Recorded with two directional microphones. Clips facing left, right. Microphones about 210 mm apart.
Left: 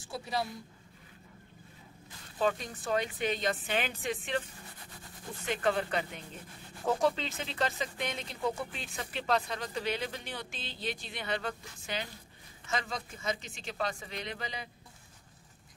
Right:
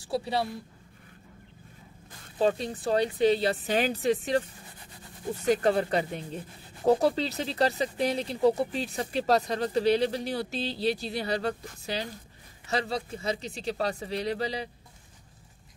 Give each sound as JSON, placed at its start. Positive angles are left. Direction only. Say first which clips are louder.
{"t": 0.0, "sound": "speech", "louder": "right 6 dB", "side_deg": -35}
{"t": 2.3, "sound": "speech", "louder": "right 5 dB", "side_deg": -35}